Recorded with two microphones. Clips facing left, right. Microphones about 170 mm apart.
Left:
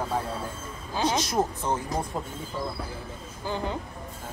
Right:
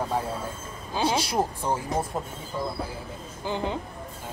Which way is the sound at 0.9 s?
10° right (ahead or behind).